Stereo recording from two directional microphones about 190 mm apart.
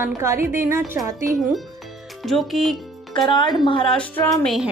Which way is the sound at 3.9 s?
5° left (ahead or behind).